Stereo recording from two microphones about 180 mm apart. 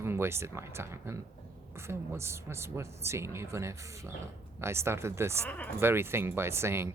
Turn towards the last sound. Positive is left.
turn(degrees=-15)  # may be behind; listen again after turning